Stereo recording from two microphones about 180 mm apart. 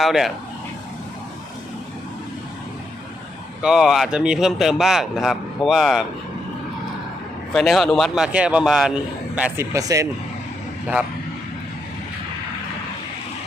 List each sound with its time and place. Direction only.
0.0 s a man's voice: centre (ahead or behind)
3.6 s a man's voice: 5° right (ahead or behind)
7.5 s a man's voice: centre (ahead or behind)
9.7 s speech: 20° right (ahead or behind)